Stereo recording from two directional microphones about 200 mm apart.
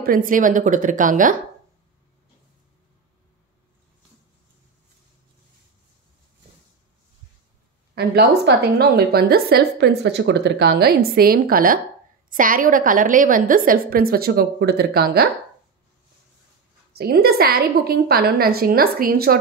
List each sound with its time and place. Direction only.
0.0 s a woman's voice: 45° right (ahead or behind)
7.9 s a woman's voice: 50° right (ahead or behind)
16.9 s a woman's voice: 55° right (ahead or behind)